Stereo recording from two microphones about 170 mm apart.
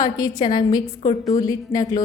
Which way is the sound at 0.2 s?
25° left (ahead or behind).